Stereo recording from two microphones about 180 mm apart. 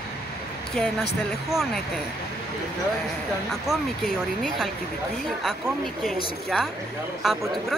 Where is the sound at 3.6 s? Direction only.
Centre (ahead or behind).